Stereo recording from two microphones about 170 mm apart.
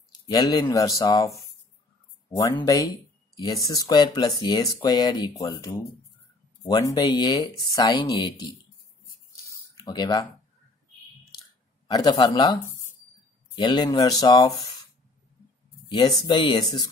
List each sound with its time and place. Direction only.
0.3 s speech: 25° left (ahead or behind)
2.5 s speech: 20° left (ahead or behind)
9.3 s a sound: 20° left (ahead or behind)
11.9 s speech: 25° left (ahead or behind)
13.6 s speech: 25° left (ahead or behind)
15.9 s speech: 30° left (ahead or behind)